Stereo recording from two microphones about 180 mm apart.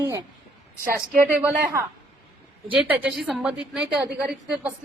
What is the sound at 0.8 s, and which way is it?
Speech, 50° right (ahead or behind).